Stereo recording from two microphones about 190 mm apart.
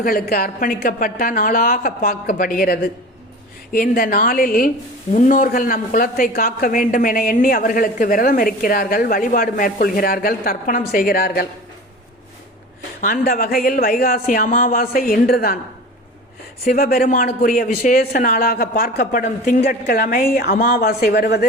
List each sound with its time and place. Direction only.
0.0 s speech: 50° left (ahead or behind)
13.0 s speech: 45° left (ahead or behind)
16.6 s speech: 50° left (ahead or behind)